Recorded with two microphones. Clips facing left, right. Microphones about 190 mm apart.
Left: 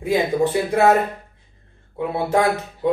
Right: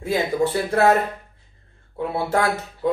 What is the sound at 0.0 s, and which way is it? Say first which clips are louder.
Speech: left 2 dB; 15° left (ahead or behind).